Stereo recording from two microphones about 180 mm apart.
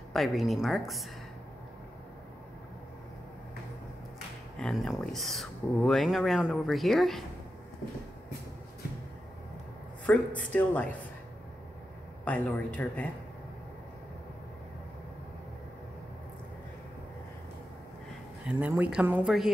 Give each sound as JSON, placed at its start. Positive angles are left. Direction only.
{"t": 0.1, "sound": "speech", "side_deg": 0}
{"t": 4.6, "sound": "speech", "side_deg": 0}
{"t": 10.0, "sound": "speech", "side_deg": 10}
{"t": 12.3, "sound": "speech", "side_deg": 10}
{"t": 18.4, "sound": "speech", "side_deg": -5}